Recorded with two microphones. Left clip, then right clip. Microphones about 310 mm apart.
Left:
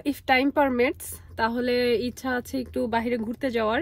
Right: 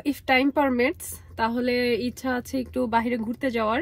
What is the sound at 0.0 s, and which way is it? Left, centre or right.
Speech, centre.